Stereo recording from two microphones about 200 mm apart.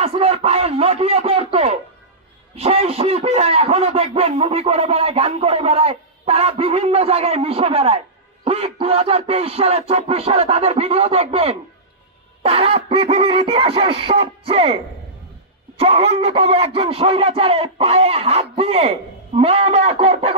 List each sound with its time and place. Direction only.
0.0 s a man's voice: 30° right (ahead or behind)
15.8 s speech: 30° right (ahead or behind)